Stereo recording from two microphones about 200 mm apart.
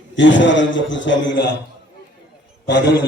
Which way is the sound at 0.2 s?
65° left (ahead or behind).